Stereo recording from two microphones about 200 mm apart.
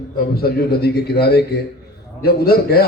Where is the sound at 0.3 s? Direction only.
50° left (ahead or behind).